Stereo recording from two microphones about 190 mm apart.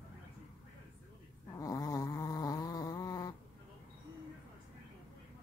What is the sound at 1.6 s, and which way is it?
Snoring, 20° left (ahead or behind).